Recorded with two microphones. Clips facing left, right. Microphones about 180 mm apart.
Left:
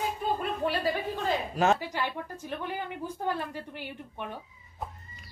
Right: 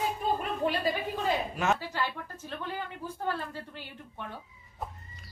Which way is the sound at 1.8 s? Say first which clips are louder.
Left 1 dB; 15° left (ahead or behind).